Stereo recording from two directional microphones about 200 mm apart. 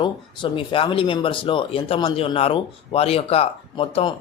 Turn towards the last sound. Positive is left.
turn(degrees=30)  # may be behind; listen again after turning